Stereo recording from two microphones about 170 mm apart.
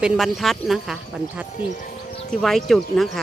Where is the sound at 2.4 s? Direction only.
Centre (ahead or behind).